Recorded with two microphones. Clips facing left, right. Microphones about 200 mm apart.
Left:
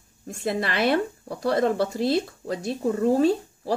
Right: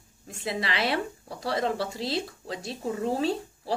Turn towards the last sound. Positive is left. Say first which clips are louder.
# left 7 dB
turn(degrees=50)  # may be behind; listen again after turning